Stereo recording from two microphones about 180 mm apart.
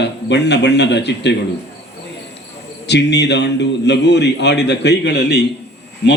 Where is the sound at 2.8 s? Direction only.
70° left (ahead or behind).